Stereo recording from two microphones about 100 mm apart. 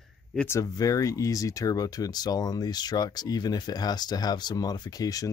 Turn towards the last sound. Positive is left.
turn(degrees=40)  # may be behind; listen again after turning